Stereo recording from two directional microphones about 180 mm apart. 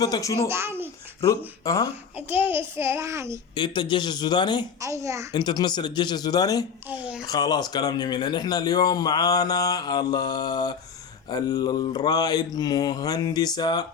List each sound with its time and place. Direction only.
0.0 s speech: 20° left (ahead or behind)
0.4 s a child's voice: 15° right (ahead or behind)
1.6 s speech: 20° left (ahead or behind)
2.1 s a child's voice: 10° right (ahead or behind)
3.5 s speech: 25° left (ahead or behind)
4.8 s a child's voice: 15° right (ahead or behind)
5.3 s speech: 25° left (ahead or behind)
6.8 s a child's voice: 5° right (ahead or behind)
7.3 s speech: 20° left (ahead or behind)